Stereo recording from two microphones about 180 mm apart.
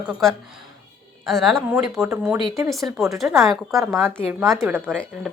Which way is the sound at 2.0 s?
15° right (ahead or behind).